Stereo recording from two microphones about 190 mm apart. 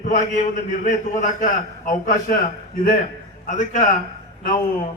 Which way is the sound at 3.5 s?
40° left (ahead or behind).